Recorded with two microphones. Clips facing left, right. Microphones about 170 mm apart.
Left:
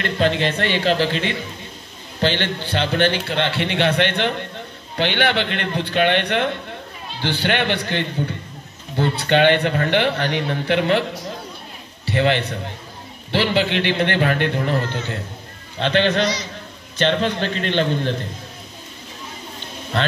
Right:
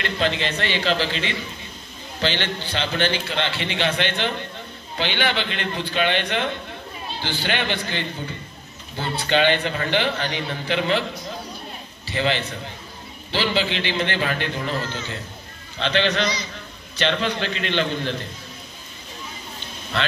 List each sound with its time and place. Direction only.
0.0 s a man's voice: 50° left (ahead or behind)
19.9 s a man's voice: 50° left (ahead or behind)